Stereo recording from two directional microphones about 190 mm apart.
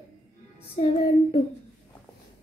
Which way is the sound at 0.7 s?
35° left (ahead or behind).